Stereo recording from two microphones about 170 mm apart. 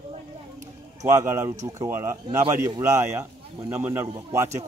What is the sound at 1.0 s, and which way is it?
Speech, 20° right (ahead or behind).